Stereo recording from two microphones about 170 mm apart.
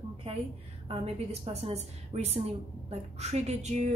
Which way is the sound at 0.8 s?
35° right (ahead or behind).